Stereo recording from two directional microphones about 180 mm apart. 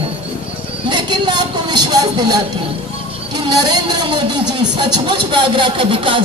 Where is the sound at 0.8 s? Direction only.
25° right (ahead or behind).